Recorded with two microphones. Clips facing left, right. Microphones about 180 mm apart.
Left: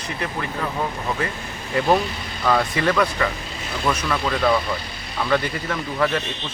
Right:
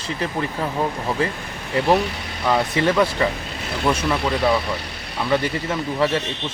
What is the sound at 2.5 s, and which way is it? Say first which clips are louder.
A man's voice: right 1 dB; 20° right (ahead or behind).